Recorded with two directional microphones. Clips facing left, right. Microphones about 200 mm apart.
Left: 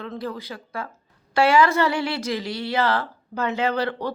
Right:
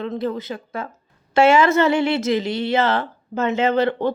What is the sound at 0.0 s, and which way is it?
Speech, 20° right (ahead or behind).